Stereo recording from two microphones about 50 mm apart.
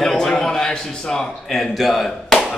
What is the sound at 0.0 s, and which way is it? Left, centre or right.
A man's voice, centre.